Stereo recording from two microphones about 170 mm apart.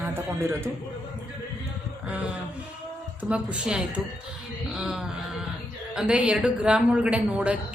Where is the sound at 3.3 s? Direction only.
5° right (ahead or behind).